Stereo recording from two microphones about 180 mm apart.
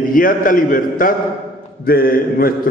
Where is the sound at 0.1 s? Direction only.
50° left (ahead or behind).